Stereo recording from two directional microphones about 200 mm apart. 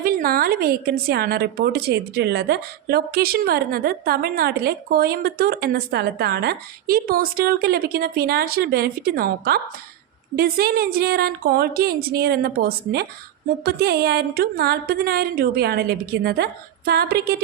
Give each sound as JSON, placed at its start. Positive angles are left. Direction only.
{"t": 0.0, "sound": "a woman's voice", "side_deg": -45}